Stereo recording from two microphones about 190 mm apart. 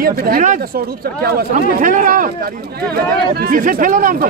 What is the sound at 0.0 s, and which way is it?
Speech, 50° right (ahead or behind).